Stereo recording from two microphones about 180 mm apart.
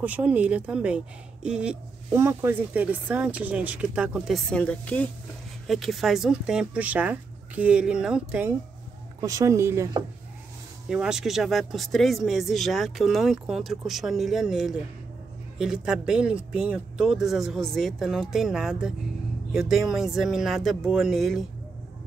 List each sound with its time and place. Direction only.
0.0 s speech: 10° right (ahead or behind)
9.2 s speech: 20° right (ahead or behind)
10.9 s speech: 5° right (ahead or behind)